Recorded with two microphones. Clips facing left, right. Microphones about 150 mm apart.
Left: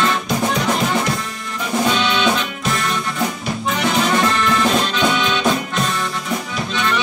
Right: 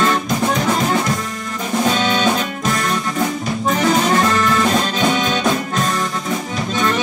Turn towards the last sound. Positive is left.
turn(degrees=-45)  # may be behind; listen again after turning